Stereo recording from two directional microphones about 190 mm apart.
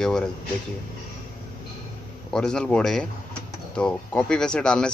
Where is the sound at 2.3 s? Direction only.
5° left (ahead or behind).